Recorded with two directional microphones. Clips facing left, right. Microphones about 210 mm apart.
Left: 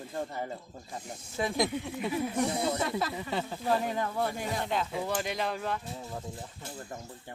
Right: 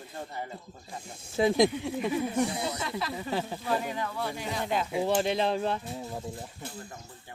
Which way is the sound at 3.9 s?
45° left (ahead or behind).